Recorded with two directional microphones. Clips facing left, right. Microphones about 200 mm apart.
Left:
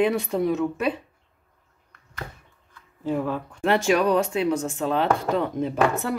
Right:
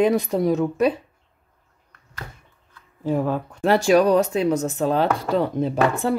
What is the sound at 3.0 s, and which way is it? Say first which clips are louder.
Speech: right 3 dB; 40° right (ahead or behind).